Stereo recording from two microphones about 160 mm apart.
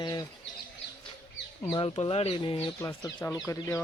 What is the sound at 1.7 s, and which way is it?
Speech, 35° left (ahead or behind).